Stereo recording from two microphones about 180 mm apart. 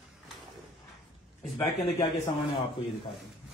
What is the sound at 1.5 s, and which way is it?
Speech, 25° left (ahead or behind).